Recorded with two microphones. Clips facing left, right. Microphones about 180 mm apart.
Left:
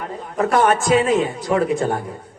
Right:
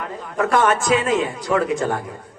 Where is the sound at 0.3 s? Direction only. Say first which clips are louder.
Left 1 dB; 35° left (ahead or behind).